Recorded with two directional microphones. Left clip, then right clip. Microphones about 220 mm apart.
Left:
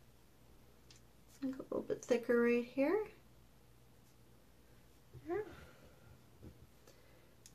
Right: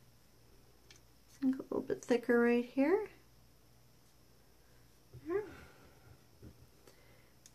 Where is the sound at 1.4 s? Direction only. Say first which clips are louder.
Right 5 dB; 40° right (ahead or behind).